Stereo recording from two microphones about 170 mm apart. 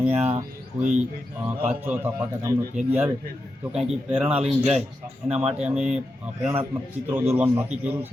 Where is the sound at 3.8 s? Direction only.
40° right (ahead or behind).